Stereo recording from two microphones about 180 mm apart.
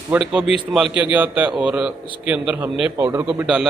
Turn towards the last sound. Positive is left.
turn(degrees=-5)  # may be behind; listen again after turning